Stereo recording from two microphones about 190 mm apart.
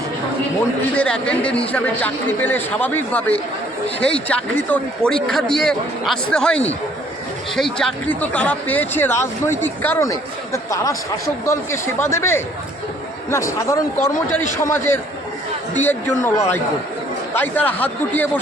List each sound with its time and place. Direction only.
0.9 s speech: 5° left (ahead or behind)